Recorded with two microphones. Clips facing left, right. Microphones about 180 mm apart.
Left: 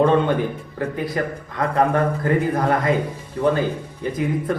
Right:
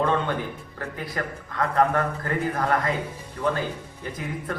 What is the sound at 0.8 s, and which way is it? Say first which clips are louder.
Speech: left 8 dB; 15° left (ahead or behind).